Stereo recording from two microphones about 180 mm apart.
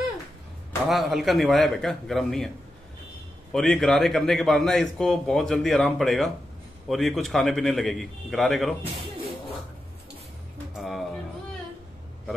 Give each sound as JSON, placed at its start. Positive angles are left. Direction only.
{"t": 0.8, "sound": "a man's voice", "side_deg": 0}
{"t": 3.5, "sound": "a man's voice", "side_deg": 0}
{"t": 10.8, "sound": "music", "side_deg": 0}